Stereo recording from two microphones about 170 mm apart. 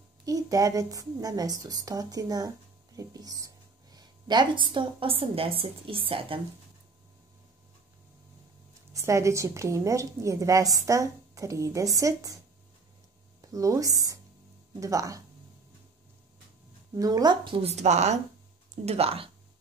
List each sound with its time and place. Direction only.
0.2 s a woman's voice: 20° right (ahead or behind)
8.9 s a woman's voice: 15° right (ahead or behind)
13.4 s a woman's voice: 20° right (ahead or behind)
16.9 s a woman's voice: 20° right (ahead or behind)